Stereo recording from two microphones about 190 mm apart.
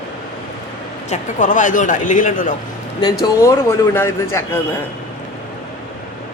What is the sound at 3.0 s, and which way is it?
A man's voice, 15° left (ahead or behind).